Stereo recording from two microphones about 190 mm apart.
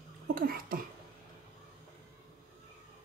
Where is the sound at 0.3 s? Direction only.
50° right (ahead or behind).